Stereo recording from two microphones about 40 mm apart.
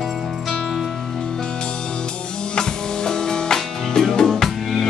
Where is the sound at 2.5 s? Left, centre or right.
Centre.